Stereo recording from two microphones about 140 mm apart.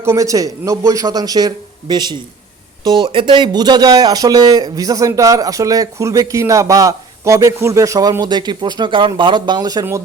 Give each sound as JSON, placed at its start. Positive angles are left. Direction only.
{"t": 0.0, "sound": "speech", "side_deg": -20}